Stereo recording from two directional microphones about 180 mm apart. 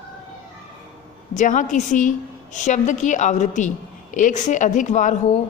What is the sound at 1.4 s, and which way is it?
Speech, 45° left (ahead or behind).